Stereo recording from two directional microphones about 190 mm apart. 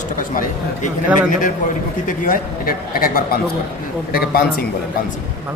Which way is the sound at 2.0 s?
45° left (ahead or behind).